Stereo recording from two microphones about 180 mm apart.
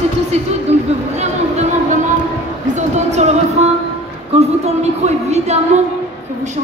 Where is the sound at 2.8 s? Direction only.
40° right (ahead or behind).